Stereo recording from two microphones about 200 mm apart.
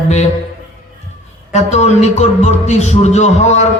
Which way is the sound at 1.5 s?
35° left (ahead or behind).